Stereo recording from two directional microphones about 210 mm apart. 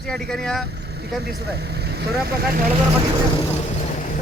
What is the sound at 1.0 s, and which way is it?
Speech, 50° right (ahead or behind).